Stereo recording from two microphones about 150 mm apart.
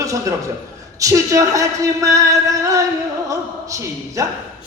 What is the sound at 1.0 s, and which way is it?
A woman's voice, 20° right (ahead or behind).